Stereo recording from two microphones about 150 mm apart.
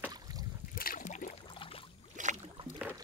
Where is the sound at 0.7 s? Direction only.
70° left (ahead or behind); by 1.4 s 55° left (ahead or behind).